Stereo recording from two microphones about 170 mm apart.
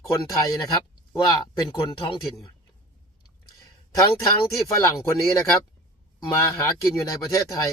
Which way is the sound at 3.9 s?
20° left (ahead or behind).